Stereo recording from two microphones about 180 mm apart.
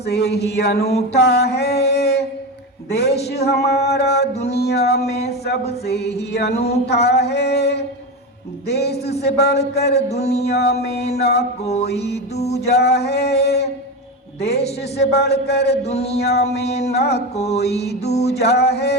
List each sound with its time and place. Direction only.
0.0 s mantra: 65° left (ahead or behind)
11.6 s mantra: 35° left (ahead or behind)
11.9 s mantra: 65° left (ahead or behind)
12.4 s mantra: 35° left (ahead or behind)
12.6 s mantra: 65° left (ahead or behind)
14.9 s mantra: 65° left (ahead or behind)
15.9 s mantra: 35° left (ahead or behind)
16.1 s mantra: 65° left (ahead or behind)
17.3 s mantra: 35° left (ahead or behind)
17.6 s mantra: 65° left (ahead or behind)
18.1 s mantra: 35° left (ahead or behind)
18.5 s mantra: 65° left (ahead or behind)